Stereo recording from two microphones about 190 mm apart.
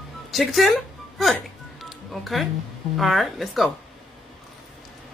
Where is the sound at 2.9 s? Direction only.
Centre (ahead or behind).